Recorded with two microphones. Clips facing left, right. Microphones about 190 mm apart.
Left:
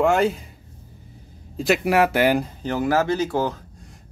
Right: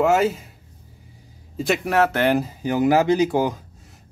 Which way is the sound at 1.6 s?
Centre (ahead or behind).